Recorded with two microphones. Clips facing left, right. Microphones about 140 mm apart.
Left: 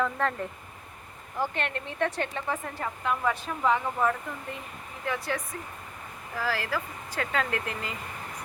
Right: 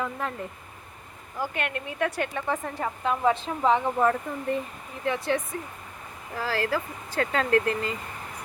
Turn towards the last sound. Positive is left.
turn(degrees=-35)  # may be behind; listen again after turning